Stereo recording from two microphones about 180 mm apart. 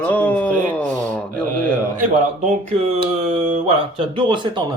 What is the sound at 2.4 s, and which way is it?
Speech, 35° right (ahead or behind).